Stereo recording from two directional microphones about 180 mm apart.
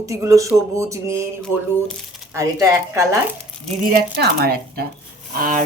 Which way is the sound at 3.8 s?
60° right (ahead or behind).